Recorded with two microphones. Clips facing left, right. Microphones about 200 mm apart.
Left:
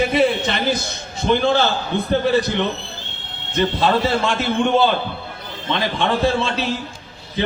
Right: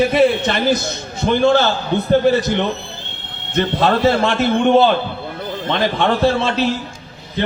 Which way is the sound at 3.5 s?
55° right (ahead or behind).